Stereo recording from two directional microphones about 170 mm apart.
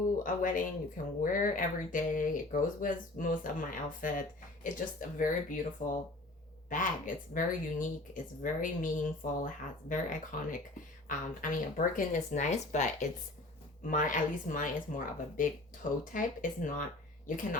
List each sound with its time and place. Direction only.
0.2 s speech: 50° left (ahead or behind)